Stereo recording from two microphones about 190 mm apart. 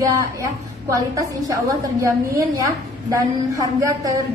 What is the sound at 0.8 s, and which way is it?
A woman's voice, 15° right (ahead or behind).